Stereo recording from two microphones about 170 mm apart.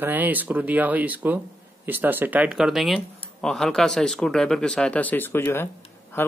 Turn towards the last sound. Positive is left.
turn(degrees=15)  # may be behind; listen again after turning